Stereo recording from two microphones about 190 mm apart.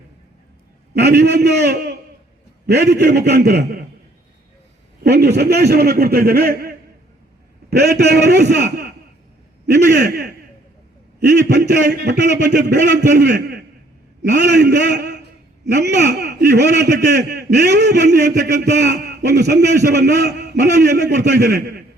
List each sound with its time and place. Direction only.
0.9 s a man's voice: 60° right (ahead or behind)
5.0 s a man's voice: 60° right (ahead or behind)
10.0 s a man's voice: 55° right (ahead or behind)